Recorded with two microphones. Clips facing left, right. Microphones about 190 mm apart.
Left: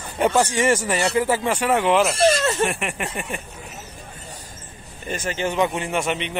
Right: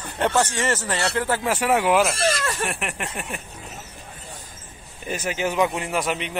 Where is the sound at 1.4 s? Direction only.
5° right (ahead or behind).